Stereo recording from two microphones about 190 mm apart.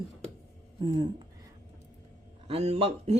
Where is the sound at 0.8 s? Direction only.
25° right (ahead or behind).